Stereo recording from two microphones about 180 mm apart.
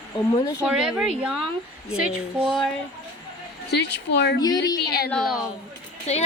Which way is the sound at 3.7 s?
70° left (ahead or behind).